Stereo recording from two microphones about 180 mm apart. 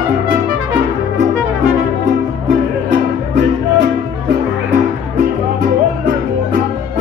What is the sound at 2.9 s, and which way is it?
Music, 75° right (ahead or behind).